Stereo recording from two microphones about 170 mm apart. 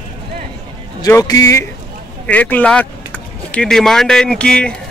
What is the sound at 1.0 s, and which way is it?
A man's voice, 20° left (ahead or behind).